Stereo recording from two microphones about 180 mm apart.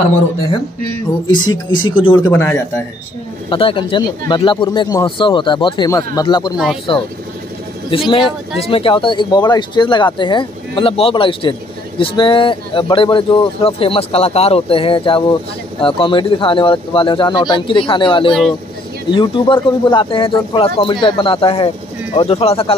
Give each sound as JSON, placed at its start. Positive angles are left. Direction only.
{"t": 1.3, "sound": "speech", "side_deg": 25}
{"t": 2.3, "sound": "a man's voice", "side_deg": 10}
{"t": 3.4, "sound": "speech", "side_deg": 30}
{"t": 6.5, "sound": "speech", "side_deg": 0}
{"t": 8.1, "sound": "speech", "side_deg": 30}